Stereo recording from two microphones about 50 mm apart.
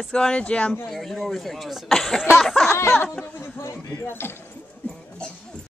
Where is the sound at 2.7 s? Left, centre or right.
Left.